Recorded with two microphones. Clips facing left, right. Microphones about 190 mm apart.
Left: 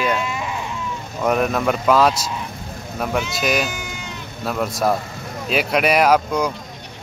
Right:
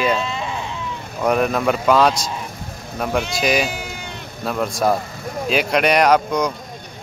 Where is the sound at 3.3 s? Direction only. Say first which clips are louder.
Right 2 dB; centre (ahead or behind).